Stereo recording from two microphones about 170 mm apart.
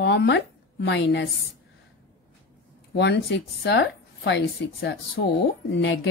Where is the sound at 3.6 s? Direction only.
85° left; by 5.2 s 70° left (ahead or behind).